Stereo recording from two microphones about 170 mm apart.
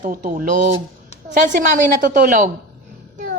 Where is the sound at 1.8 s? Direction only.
55° right (ahead or behind).